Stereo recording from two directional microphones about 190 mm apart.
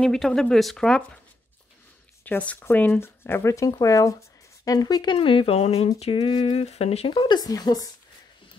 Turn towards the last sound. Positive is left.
turn(degrees=20)  # may be behind; listen again after turning